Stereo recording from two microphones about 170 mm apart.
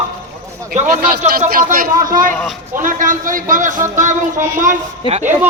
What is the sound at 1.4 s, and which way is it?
A man's voice, 55° right (ahead or behind).